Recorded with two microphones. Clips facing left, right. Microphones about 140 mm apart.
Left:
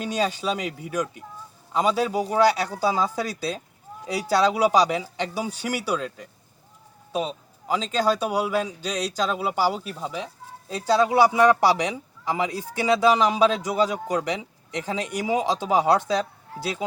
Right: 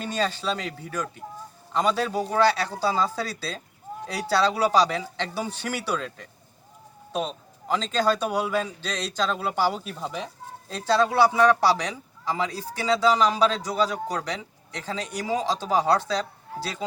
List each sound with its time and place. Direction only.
0.0 s a man's voice: 10° left (ahead or behind)